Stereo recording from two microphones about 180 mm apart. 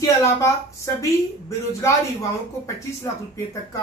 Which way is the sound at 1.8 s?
15° left (ahead or behind).